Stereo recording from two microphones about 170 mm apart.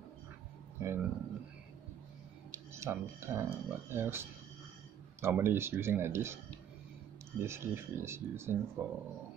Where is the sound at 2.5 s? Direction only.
15° right (ahead or behind).